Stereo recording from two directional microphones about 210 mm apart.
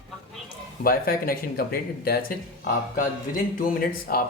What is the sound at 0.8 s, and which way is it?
Speech, 45° left (ahead or behind).